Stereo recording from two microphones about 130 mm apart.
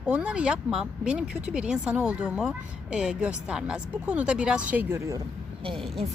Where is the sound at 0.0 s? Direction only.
10° right (ahead or behind).